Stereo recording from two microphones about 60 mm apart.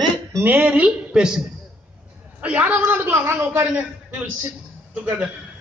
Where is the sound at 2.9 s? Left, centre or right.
Right.